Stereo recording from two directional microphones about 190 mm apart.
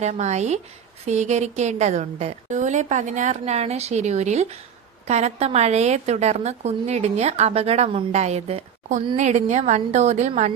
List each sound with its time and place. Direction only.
0.0 s speech: 35° right (ahead or behind)